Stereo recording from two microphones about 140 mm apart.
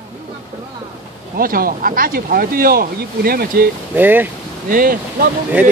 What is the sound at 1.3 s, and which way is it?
Speech, 90° right.